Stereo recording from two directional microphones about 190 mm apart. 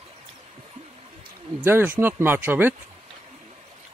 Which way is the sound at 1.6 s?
10° right (ahead or behind).